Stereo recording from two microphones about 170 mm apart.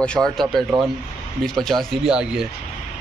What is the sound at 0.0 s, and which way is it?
Speech, 5° left (ahead or behind).